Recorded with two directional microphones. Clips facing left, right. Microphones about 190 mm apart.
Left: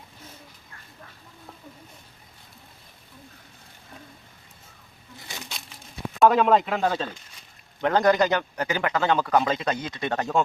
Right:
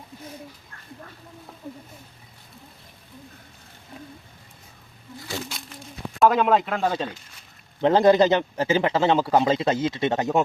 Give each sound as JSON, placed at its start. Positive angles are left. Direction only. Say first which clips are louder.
{"t": 5.5, "sound": "a sound", "louder": "right 3 dB", "side_deg": 0}
{"t": 6.1, "sound": "speech", "louder": "even", "side_deg": 0}
{"t": 7.8, "sound": "a man's voice", "louder": "right 4 dB", "side_deg": -25}